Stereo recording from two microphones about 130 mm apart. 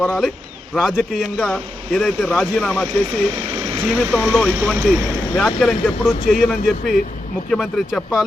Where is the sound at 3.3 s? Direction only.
40° right (ahead or behind).